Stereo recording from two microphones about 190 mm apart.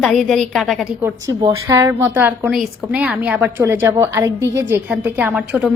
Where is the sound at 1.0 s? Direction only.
15° right (ahead or behind).